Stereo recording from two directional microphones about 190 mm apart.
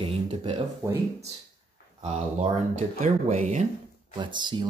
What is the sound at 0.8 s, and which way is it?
Speech, 15° right (ahead or behind).